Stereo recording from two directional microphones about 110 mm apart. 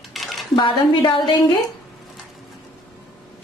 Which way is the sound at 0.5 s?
50° left (ahead or behind).